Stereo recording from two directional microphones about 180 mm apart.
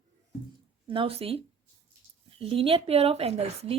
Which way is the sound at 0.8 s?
30° right (ahead or behind).